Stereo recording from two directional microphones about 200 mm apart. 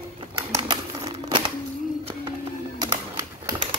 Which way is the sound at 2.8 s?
20° right (ahead or behind).